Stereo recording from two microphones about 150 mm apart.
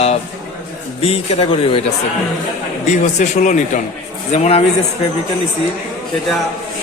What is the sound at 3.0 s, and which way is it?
Speech, 55° left (ahead or behind).